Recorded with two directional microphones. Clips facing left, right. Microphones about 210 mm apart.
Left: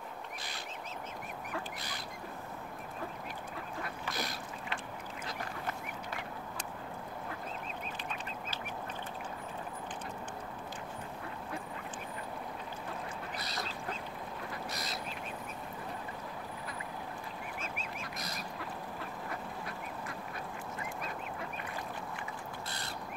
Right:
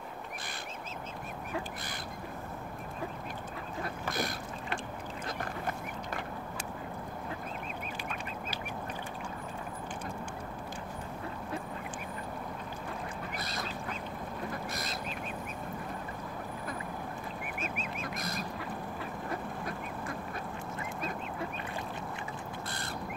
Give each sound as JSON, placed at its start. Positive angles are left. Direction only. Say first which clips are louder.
{"t": 3.8, "sound": "boat", "louder": "right 6 dB", "side_deg": -50}
{"t": 5.2, "sound": "duck", "louder": "right 3 dB", "side_deg": -50}
{"t": 13.4, "sound": "duck", "louder": "right 2 dB", "side_deg": -50}
{"t": 14.5, "sound": "a sound", "louder": "right 3 dB", "side_deg": -50}
{"t": 17.6, "sound": "goose", "louder": "right 4 dB", "side_deg": -20}
{"t": 18.1, "sound": "goose", "louder": "right 5 dB", "side_deg": -50}